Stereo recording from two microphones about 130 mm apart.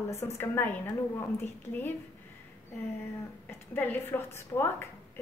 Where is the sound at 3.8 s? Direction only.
15° left (ahead or behind).